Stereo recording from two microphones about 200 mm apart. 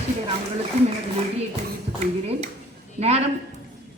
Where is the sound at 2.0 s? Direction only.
30° right (ahead or behind).